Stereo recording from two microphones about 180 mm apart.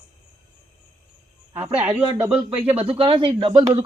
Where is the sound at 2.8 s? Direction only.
30° right (ahead or behind).